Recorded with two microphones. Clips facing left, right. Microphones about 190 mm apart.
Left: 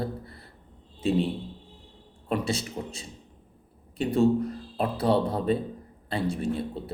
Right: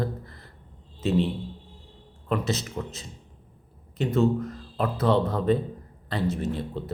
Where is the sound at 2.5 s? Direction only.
30° left (ahead or behind).